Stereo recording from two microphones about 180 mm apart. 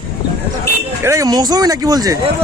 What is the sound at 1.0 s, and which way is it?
Speech, 20° right (ahead or behind).